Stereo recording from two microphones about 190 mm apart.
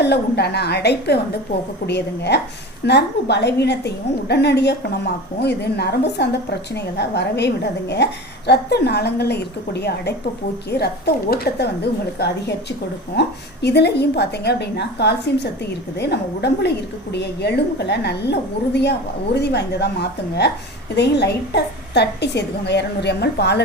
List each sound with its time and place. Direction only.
0.0 s a woman's voice: 60° left (ahead or behind)